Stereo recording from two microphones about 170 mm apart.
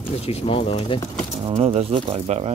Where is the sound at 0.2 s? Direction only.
35° left (ahead or behind).